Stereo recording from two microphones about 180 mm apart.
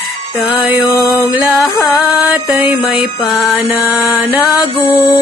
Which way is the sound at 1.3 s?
10° right (ahead or behind).